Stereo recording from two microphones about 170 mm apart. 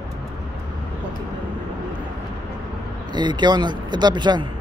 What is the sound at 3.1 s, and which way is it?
Speech, 25° right (ahead or behind).